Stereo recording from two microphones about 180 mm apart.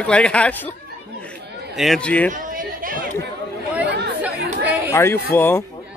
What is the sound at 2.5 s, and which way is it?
Chatter, 50° right (ahead or behind).